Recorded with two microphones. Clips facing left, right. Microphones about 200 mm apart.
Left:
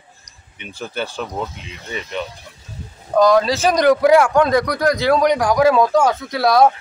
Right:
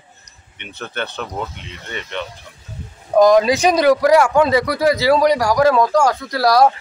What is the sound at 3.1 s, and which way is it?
Speech, 15° right (ahead or behind).